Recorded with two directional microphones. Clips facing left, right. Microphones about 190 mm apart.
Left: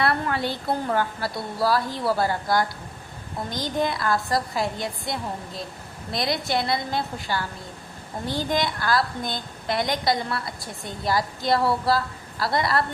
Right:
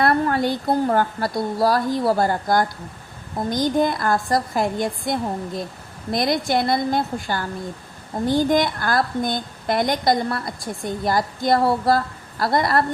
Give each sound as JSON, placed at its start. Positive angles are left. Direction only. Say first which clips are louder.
{"t": 0.0, "sound": "a woman's voice", "louder": "right 5 dB", "side_deg": -45}